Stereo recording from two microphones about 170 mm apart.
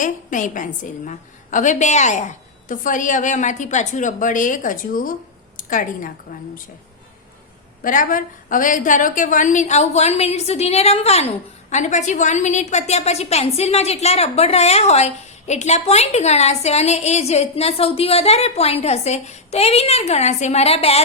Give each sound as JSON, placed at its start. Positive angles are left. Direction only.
{"t": 0.0, "sound": "a woman's voice", "side_deg": 50}
{"t": 7.9, "sound": "a woman's voice", "side_deg": 50}